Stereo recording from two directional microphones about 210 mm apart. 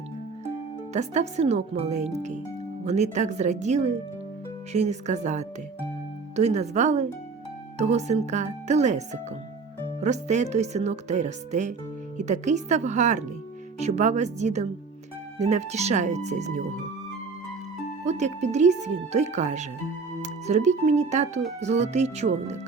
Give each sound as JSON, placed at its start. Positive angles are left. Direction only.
{"t": 0.9, "sound": "speech", "side_deg": -30}
{"t": 18.0, "sound": "speech", "side_deg": -30}